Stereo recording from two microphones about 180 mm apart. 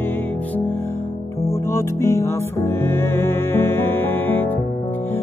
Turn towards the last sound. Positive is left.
turn(degrees=10)  # may be behind; listen again after turning